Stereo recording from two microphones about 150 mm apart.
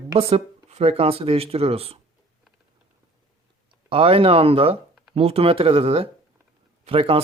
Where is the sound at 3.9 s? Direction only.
40° right (ahead or behind).